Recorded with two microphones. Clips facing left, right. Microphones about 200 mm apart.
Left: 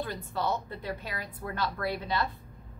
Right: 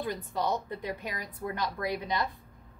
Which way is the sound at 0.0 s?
15° right (ahead or behind).